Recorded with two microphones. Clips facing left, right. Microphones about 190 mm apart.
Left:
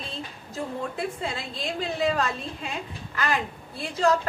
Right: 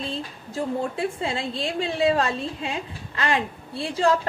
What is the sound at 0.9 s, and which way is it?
A woman's voice, 25° right (ahead or behind).